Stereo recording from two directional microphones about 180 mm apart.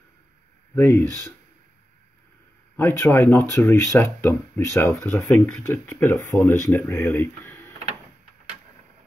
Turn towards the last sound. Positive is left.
turn(degrees=10)  # may be behind; listen again after turning